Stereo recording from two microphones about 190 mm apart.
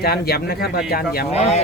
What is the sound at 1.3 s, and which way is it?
Speech, 35° left (ahead or behind).